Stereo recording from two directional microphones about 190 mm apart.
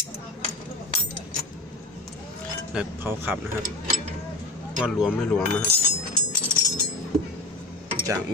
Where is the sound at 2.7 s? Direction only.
10° right (ahead or behind).